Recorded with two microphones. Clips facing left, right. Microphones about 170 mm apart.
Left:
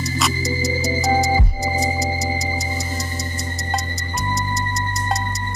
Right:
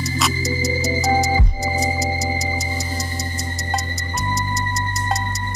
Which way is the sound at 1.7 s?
15° left (ahead or behind).